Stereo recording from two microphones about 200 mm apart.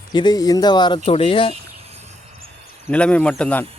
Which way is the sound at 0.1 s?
20° left (ahead or behind).